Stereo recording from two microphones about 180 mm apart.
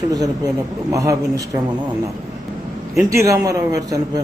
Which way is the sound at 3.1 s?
15° right (ahead or behind).